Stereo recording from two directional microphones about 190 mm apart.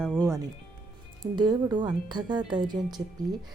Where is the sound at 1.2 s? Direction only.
25° right (ahead or behind).